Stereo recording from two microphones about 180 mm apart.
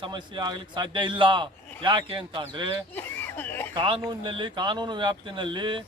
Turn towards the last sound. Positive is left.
turn(degrees=-25)  # may be behind; listen again after turning